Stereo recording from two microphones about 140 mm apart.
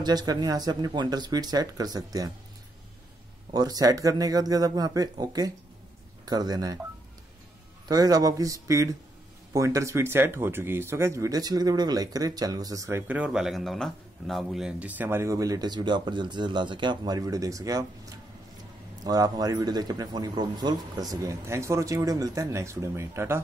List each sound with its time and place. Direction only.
0.0 s a man's voice: 30° right (ahead or behind)
3.5 s a man's voice: 25° right (ahead or behind)
7.9 s a man's voice: 25° right (ahead or behind)
13.0 s a man's voice: 10° right (ahead or behind)
19.0 s a man's voice: 25° right (ahead or behind)